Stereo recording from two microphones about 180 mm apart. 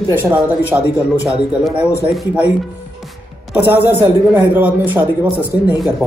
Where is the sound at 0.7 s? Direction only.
15° right (ahead or behind).